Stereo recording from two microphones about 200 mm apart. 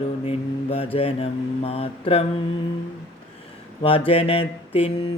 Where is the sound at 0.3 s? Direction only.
30° left (ahead or behind).